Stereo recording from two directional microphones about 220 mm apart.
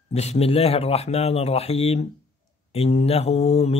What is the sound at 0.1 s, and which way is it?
Speech, 30° left (ahead or behind).